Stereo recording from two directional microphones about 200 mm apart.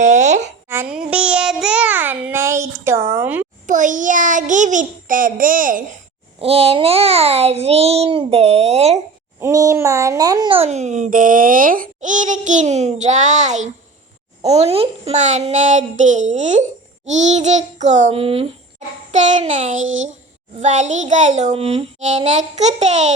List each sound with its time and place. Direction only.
0.0 s a child's voice: 35° right (ahead or behind)
0.7 s a child's voice: 10° right (ahead or behind)
3.7 s a child's voice: 40° right (ahead or behind)
6.4 s a child's voice: 30° right (ahead or behind)
9.4 s a child's voice: 15° right (ahead or behind); by 23.1 s 35° right (ahead or behind)